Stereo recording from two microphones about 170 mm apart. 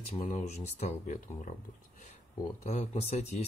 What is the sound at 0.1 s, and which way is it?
Speech, 40° left (ahead or behind).